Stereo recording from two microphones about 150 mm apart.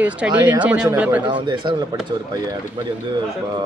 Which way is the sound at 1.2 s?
30° right (ahead or behind).